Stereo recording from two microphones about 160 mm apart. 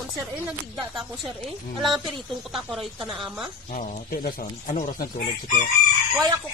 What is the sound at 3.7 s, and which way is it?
Speech, 60° left (ahead or behind).